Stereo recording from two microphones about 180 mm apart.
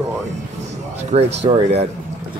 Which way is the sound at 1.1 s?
35° right (ahead or behind).